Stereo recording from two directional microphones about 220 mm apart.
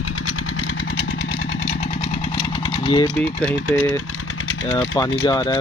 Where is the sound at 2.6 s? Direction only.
20° left (ahead or behind).